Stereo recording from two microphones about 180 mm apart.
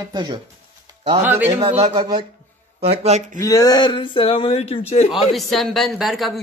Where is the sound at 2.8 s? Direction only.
35° right (ahead or behind).